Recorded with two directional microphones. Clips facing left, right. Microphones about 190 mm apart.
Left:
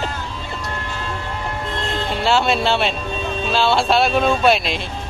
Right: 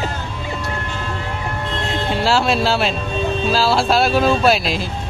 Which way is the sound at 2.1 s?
Centre (ahead or behind).